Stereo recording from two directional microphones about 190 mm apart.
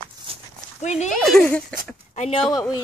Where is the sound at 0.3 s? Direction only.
30° right (ahead or behind).